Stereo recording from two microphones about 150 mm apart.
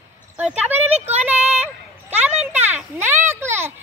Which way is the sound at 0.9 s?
45° right (ahead or behind).